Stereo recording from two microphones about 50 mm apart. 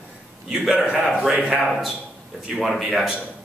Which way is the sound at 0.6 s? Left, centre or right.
Right.